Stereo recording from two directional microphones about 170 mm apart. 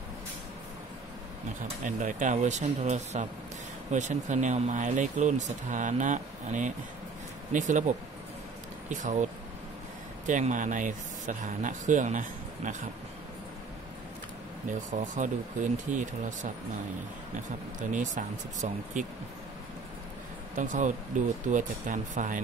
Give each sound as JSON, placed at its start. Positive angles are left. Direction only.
{"t": 1.8, "sound": "speech", "side_deg": -50}
{"t": 8.9, "sound": "speech", "side_deg": -45}
{"t": 10.2, "sound": "speech", "side_deg": -50}
{"t": 14.7, "sound": "speech", "side_deg": -45}
{"t": 17.9, "sound": "speech", "side_deg": -45}
{"t": 20.5, "sound": "speech", "side_deg": -50}